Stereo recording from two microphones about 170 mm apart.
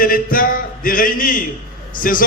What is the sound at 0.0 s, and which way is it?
A man's voice, 55° left (ahead or behind).